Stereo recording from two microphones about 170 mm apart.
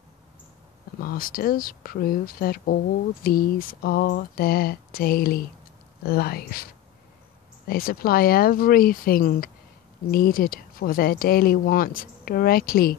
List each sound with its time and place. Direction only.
0.9 s speech: 60° left (ahead or behind)